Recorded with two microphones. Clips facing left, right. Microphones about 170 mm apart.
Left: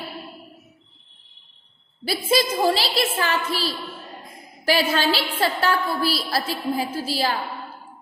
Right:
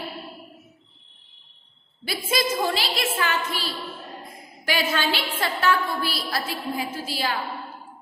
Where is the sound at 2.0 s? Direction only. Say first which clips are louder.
Left 4 dB; 35° left (ahead or behind).